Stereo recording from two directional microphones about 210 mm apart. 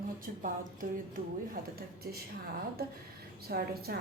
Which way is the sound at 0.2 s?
40° right (ahead or behind).